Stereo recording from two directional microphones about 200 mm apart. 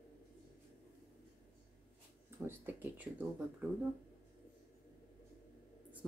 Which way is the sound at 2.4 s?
10° right (ahead or behind).